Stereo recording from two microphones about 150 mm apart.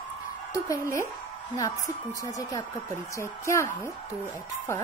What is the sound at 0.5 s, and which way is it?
A woman's voice, 20° left (ahead or behind).